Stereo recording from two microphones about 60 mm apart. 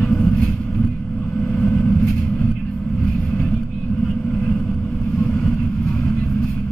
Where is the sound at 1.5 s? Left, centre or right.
Centre.